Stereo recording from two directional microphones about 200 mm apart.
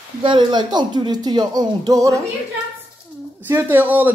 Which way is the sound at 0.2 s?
25° right (ahead or behind).